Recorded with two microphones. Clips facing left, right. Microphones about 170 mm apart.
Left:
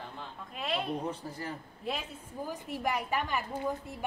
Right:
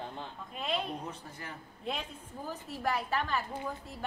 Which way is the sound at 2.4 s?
15° left (ahead or behind).